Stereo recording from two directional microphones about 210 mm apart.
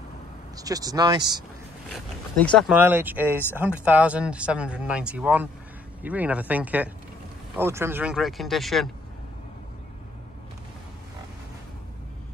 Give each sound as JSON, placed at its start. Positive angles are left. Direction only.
{"t": 0.6, "sound": "speech", "side_deg": -15}
{"t": 1.9, "sound": "speech", "side_deg": 0}
{"t": 2.7, "sound": "speech", "side_deg": -10}